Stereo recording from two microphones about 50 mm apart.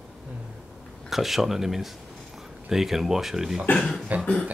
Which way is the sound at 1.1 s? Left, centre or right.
Centre.